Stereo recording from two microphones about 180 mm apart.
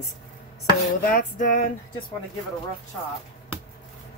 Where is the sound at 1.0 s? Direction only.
50° left (ahead or behind).